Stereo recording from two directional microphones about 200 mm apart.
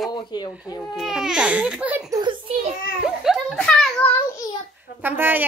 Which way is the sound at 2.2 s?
25° right (ahead or behind).